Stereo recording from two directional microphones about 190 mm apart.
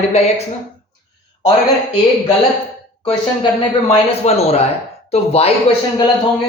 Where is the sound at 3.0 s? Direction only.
30° left (ahead or behind).